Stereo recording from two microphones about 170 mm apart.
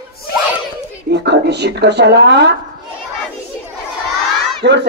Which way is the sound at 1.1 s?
90° right.